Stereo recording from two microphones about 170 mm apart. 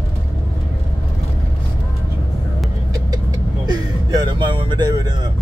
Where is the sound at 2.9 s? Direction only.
20° right (ahead or behind).